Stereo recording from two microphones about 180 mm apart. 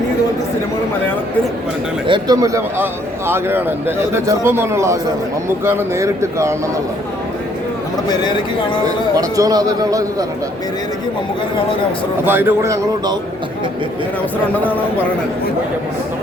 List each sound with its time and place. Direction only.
2.0 s a man's voice: 25° right (ahead or behind)
8.0 s speech: 25° left (ahead or behind)
9.1 s a man's voice: 20° right (ahead or behind)
12.2 s a man's voice: 10° right (ahead or behind)